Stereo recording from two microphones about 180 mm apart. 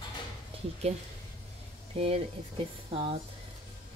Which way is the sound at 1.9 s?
35° right (ahead or behind).